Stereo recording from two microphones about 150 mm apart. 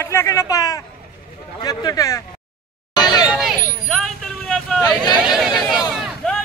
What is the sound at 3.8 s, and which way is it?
Vehicle, 5° left (ahead or behind).